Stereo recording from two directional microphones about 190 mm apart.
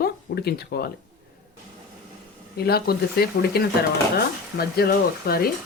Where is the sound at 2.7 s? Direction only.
55° left (ahead or behind).